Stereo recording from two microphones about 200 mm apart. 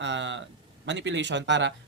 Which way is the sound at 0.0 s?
65° right (ahead or behind).